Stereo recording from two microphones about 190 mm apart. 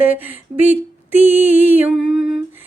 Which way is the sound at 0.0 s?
10° right (ahead or behind).